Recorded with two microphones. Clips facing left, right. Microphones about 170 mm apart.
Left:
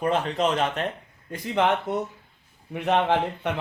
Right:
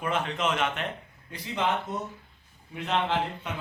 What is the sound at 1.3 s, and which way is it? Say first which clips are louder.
Speech: left 6 dB; 55° left (ahead or behind).